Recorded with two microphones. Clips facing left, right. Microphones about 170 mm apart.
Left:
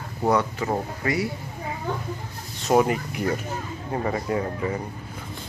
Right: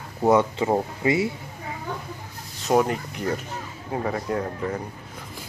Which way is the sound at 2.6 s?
5° left (ahead or behind).